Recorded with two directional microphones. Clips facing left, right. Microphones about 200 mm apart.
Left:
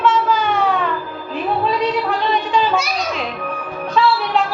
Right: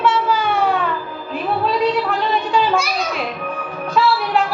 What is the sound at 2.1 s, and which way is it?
A woman's voice, centre (ahead or behind).